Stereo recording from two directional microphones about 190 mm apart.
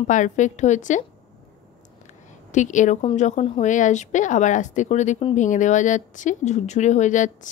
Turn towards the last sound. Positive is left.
turn(degrees=40)  # may be behind; listen again after turning